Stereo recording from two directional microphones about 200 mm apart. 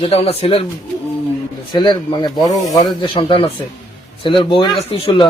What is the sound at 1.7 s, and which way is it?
Speech, 20° left (ahead or behind).